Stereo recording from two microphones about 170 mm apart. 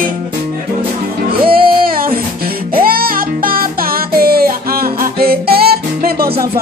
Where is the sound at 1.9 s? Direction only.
60° right (ahead or behind).